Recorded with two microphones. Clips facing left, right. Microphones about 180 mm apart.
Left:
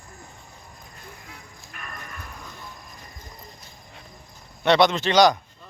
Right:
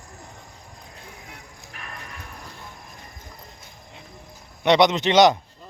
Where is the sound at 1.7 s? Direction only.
70° right (ahead or behind).